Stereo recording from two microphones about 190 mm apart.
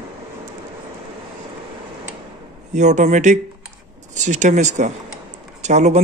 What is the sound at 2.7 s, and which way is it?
Speech, 40° right (ahead or behind).